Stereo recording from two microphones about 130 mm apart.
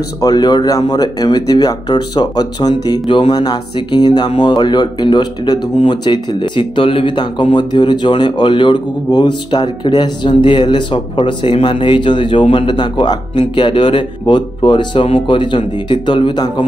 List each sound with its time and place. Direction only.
0.2 s speech: 30° left (ahead or behind)